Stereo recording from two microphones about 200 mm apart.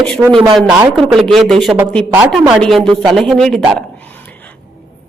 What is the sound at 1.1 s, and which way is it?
Speech, centre (ahead or behind).